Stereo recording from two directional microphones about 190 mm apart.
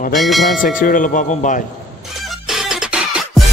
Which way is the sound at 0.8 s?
45° left (ahead or behind).